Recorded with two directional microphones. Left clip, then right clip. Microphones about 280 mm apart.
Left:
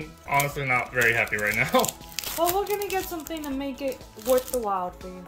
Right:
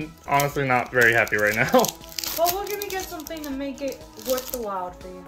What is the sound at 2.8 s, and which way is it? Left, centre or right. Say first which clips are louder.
Speech: left 1 dB; left.